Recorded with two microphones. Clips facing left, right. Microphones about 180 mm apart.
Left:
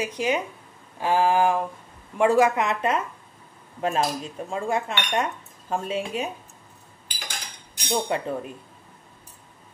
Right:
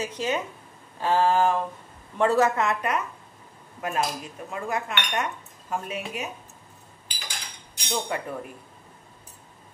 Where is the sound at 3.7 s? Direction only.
25° left (ahead or behind).